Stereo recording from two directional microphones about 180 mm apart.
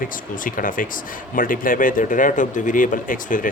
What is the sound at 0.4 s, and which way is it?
Speech, 50° left (ahead or behind).